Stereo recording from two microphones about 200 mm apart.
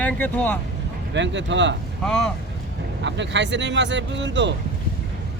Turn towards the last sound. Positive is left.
turn(degrees=-65)  # may be behind; listen again after turning